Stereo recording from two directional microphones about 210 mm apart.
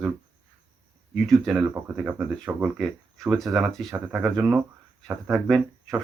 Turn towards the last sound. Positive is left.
turn(degrees=0)  # may be behind; listen again after turning